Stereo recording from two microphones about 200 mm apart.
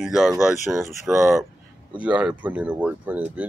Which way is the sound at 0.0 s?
Centre (ahead or behind).